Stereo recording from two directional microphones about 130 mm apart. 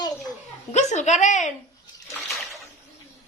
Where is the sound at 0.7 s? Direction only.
65° left (ahead or behind).